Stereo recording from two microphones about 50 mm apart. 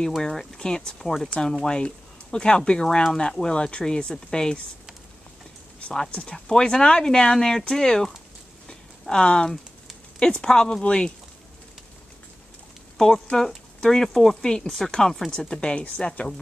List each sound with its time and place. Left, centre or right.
0.1 s speech: centre
6.2 s speech: centre
12.9 s speech: centre